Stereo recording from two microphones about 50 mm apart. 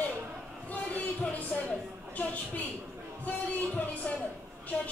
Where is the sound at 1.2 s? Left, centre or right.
Left.